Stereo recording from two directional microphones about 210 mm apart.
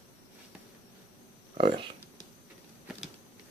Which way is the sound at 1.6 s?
25° right (ahead or behind).